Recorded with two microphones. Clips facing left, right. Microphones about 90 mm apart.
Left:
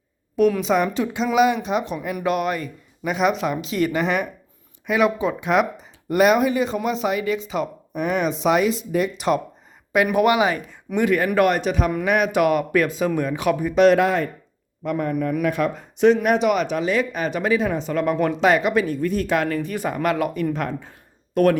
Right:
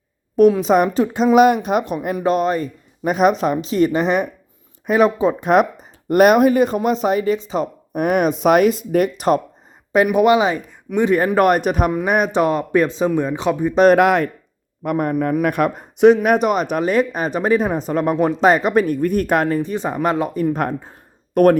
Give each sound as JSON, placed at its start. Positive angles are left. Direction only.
{"t": 0.6, "sound": "a man's voice", "side_deg": -40}
{"t": 2.1, "sound": "speech", "side_deg": -35}
{"t": 3.1, "sound": "a man's voice", "side_deg": -45}
{"t": 6.7, "sound": "speech", "side_deg": -40}
{"t": 7.9, "sound": "a man's voice", "side_deg": -55}
{"t": 10.1, "sound": "speech", "side_deg": -20}
{"t": 11.3, "sound": "a man's voice", "side_deg": -45}
{"t": 12.0, "sound": "speech", "side_deg": -35}
{"t": 13.7, "sound": "a man's voice", "side_deg": -45}
{"t": 14.0, "sound": "speech", "side_deg": -65}
{"t": 14.8, "sound": "a man's voice", "side_deg": -50}
{"t": 19.5, "sound": "speech", "side_deg": -25}